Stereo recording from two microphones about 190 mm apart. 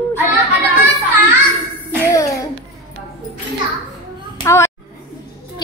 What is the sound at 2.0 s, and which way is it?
Music, 15° left (ahead or behind).